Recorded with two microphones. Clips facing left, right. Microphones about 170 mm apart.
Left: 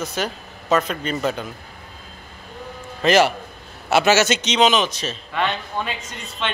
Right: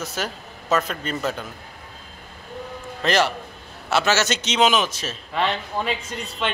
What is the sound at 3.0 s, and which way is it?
A man's voice, 5° left (ahead or behind).